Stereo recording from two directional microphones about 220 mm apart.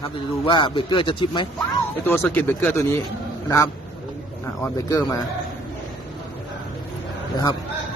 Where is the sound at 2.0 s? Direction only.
10° left (ahead or behind).